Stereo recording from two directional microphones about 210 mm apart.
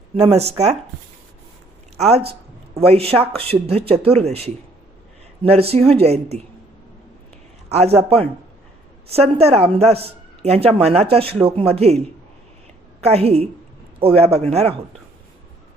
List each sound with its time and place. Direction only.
0.3 s speech: 30° right (ahead or behind)
2.0 s speech: 30° right (ahead or behind)
7.7 s speech: 30° right (ahead or behind)
9.0 s speech: 30° right (ahead or behind)
13.0 s speech: 30° right (ahead or behind)